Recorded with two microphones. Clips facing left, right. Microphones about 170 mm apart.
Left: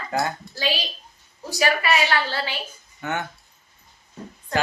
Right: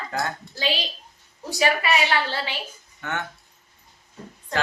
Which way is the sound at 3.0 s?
10° left (ahead or behind).